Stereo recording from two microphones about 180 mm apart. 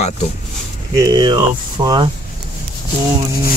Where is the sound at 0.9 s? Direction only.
20° right (ahead or behind).